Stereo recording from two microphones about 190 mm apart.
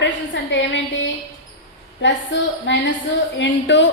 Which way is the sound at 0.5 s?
75° left (ahead or behind).